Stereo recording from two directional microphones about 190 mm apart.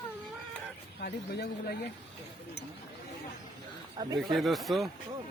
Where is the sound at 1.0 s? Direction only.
55° left (ahead or behind).